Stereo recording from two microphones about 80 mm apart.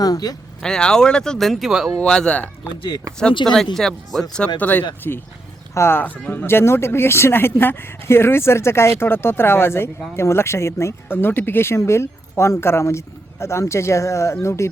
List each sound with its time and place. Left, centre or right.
0.0 s speech: left
0.6 s speech: centre
2.0 s speech: centre
4.6 s speech: left